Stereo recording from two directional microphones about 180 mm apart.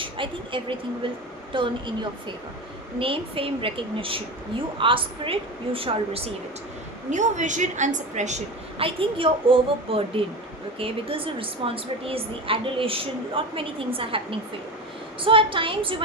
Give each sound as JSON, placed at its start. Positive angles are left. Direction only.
{"t": 0.0, "sound": "a woman's voice", "side_deg": -30}
{"t": 3.0, "sound": "a woman's voice", "side_deg": -30}
{"t": 7.1, "sound": "a woman's voice", "side_deg": -40}
{"t": 8.8, "sound": "a woman's voice", "side_deg": -30}